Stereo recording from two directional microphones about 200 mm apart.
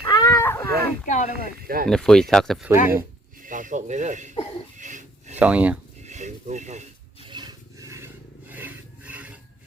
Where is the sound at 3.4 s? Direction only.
40° right (ahead or behind).